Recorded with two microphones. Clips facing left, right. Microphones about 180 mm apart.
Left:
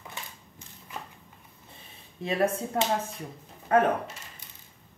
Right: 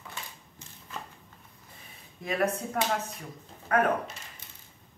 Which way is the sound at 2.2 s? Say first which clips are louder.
Left 2 dB; 30° left (ahead or behind).